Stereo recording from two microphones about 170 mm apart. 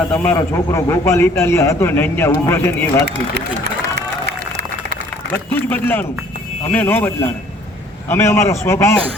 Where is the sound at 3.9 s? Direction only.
85° right.